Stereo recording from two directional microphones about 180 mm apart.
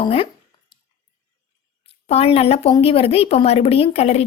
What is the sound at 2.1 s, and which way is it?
A woman's voice, 35° left (ahead or behind).